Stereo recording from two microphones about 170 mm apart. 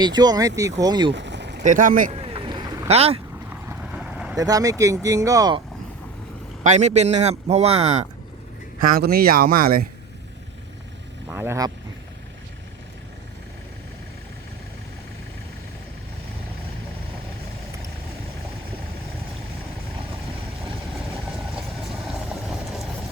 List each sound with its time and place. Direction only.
0.0 s speech: 25° right (ahead or behind)
1.1 s a sound: 90° right
1.6 s speech: 50° right (ahead or behind)
2.1 s run: 35° right (ahead or behind)
2.8 s speech: 35° right (ahead or behind)
3.7 s vehicle: 5° right (ahead or behind)
4.4 s speech: 20° right (ahead or behind)
6.7 s speech: 45° right (ahead or behind)
9.0 s speech: 60° right (ahead or behind)
11.3 s speech: 15° right (ahead or behind)
20.9 s vehicle: centre (ahead or behind)